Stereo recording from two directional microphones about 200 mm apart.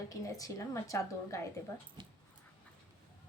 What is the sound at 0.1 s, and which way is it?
A child's voice, 15° left (ahead or behind).